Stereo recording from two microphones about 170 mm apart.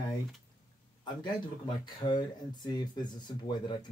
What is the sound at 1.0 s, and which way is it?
Speech, 25° left (ahead or behind).